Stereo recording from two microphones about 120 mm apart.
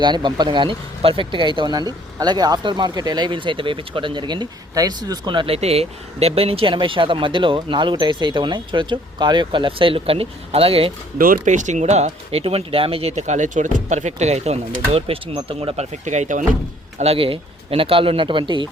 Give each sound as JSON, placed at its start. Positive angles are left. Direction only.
{"t": 0.0, "sound": "speech", "side_deg": -40}
{"t": 5.5, "sound": "speech", "side_deg": -60}
{"t": 11.4, "sound": "speech", "side_deg": -90}
{"t": 16.0, "sound": "speech", "side_deg": -85}
{"t": 17.0, "sound": "speech", "side_deg": -55}